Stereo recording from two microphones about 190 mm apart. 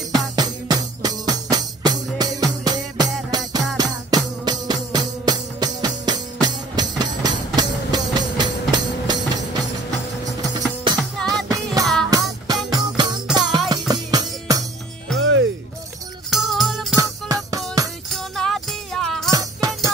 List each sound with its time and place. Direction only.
0.1 s music: 20° right (ahead or behind)
11.2 s music: 20° right (ahead or behind)
11.8 s music: centre (ahead or behind)
12.1 s music: 20° right (ahead or behind)
15.1 s music: 75° right (ahead or behind)
16.3 s music: centre (ahead or behind)
16.9 s music: 15° right (ahead or behind)
18.1 s music: centre (ahead or behind)
19.3 s music: 20° right (ahead or behind)